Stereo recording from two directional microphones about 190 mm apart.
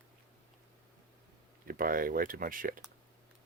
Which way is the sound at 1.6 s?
50° right (ahead or behind).